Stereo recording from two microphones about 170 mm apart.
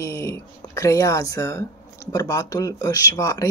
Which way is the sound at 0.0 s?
15° left (ahead or behind).